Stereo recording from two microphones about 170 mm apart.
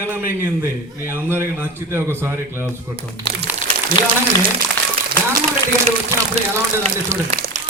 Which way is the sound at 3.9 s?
55° right (ahead or behind).